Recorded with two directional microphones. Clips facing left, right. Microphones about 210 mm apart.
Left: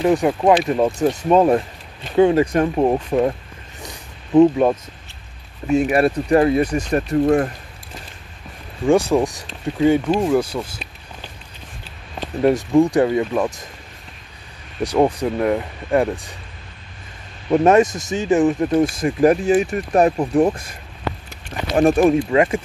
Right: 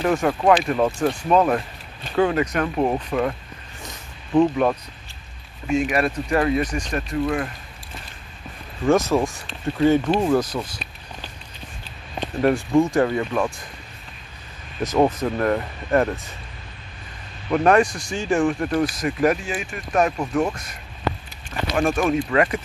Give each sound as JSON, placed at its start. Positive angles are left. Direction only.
{"t": 0.0, "sound": "speech", "side_deg": 20}
{"t": 3.8, "sound": "a sound", "side_deg": 20}
{"t": 5.7, "sound": "speech", "side_deg": 35}
{"t": 6.9, "sound": "speech", "side_deg": 40}
{"t": 9.1, "sound": "speech", "side_deg": 10}
{"t": 12.4, "sound": "speech", "side_deg": 20}
{"t": 14.8, "sound": "speech", "side_deg": 15}
{"t": 17.5, "sound": "speech", "side_deg": 25}
{"t": 21.7, "sound": "speech", "side_deg": 35}
{"t": 22.3, "sound": "speech", "side_deg": 25}